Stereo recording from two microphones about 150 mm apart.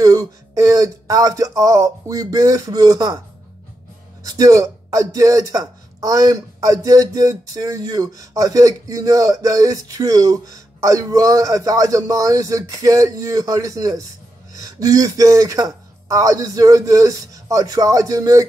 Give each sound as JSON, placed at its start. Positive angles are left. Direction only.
{"t": 0.0, "sound": "speech", "side_deg": -20}
{"t": 4.2, "sound": "speech", "side_deg": -25}